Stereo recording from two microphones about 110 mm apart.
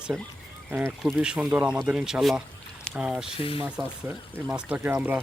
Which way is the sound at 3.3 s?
60° left (ahead or behind).